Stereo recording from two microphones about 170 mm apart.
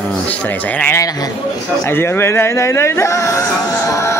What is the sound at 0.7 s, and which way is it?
Speech, 10° left (ahead or behind).